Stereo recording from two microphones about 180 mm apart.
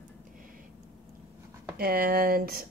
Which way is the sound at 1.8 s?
60° right (ahead or behind).